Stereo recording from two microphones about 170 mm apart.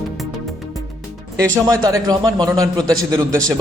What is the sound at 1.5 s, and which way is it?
A man's voice, 20° right (ahead or behind).